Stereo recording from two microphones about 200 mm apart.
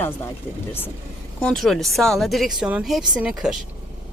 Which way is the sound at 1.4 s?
5° left (ahead or behind).